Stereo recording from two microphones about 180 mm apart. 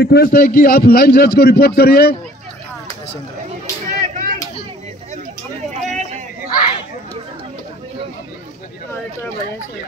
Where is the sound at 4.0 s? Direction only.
45° right (ahead or behind).